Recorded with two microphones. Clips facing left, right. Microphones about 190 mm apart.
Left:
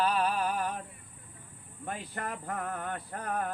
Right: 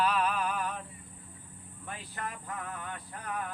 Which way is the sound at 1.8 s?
50° left (ahead or behind).